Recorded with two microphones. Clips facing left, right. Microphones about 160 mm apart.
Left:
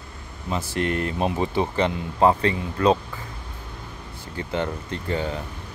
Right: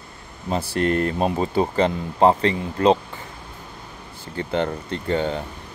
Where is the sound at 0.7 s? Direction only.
40° right (ahead or behind).